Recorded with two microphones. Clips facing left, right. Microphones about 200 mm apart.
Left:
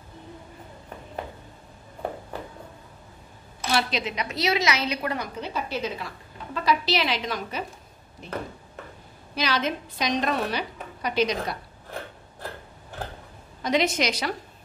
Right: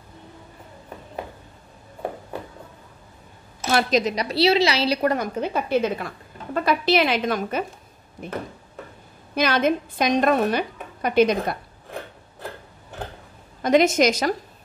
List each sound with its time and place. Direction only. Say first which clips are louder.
3.7 s a woman's voice: right 6 dB; 40° right (ahead or behind)
13.6 s a woman's voice: right 7 dB; 50° right (ahead or behind)